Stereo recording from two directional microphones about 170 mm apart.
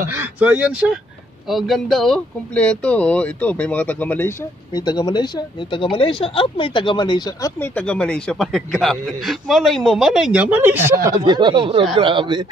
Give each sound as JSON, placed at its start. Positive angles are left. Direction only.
{"t": 0.1, "sound": "speech", "side_deg": -10}
{"t": 4.7, "sound": "speech", "side_deg": 25}
{"t": 7.7, "sound": "speech", "side_deg": 5}
{"t": 11.2, "sound": "speech", "side_deg": -25}